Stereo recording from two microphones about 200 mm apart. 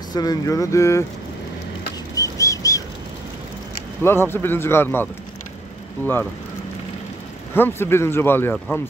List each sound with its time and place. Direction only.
0.1 s speech: 20° left (ahead or behind)
2.1 s a sound: 15° left (ahead or behind)
4.0 s speech: 10° left (ahead or behind)
7.5 s speech: 10° left (ahead or behind)